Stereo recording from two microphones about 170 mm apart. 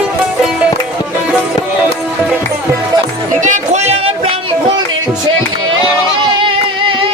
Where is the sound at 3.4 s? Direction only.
45° right (ahead or behind).